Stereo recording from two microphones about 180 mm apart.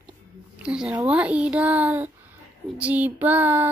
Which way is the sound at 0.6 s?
5° right (ahead or behind).